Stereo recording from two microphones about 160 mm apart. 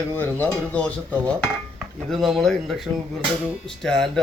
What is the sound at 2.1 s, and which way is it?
A man's voice, centre (ahead or behind).